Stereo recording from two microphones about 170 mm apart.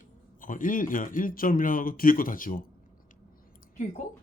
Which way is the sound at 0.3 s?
50° left (ahead or behind).